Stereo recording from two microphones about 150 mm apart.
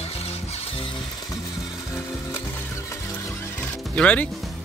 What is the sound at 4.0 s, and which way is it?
Speech, 10° left (ahead or behind).